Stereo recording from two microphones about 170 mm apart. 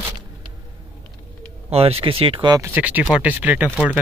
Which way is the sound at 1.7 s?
35° right (ahead or behind).